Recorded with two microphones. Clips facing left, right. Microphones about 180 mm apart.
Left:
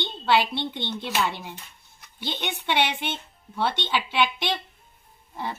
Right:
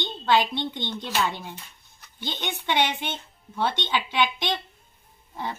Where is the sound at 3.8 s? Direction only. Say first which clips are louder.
Even; 5° left (ahead or behind).